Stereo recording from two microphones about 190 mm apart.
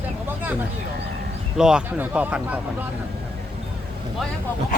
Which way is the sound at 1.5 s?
5° right (ahead or behind).